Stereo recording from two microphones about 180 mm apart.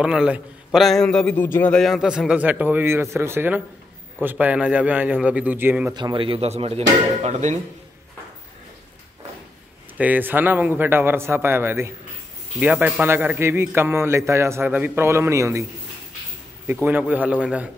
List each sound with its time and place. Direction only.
0.0 s a man's voice: 5° right (ahead or behind)
5.9 s speech: 25° right (ahead or behind)
9.9 s a man's voice: 10° right (ahead or behind)
16.6 s a man's voice: 10° right (ahead or behind)